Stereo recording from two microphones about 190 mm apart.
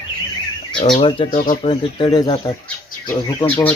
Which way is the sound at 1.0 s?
25° left (ahead or behind).